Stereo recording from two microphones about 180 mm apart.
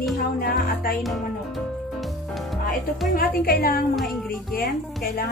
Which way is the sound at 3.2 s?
55° left (ahead or behind).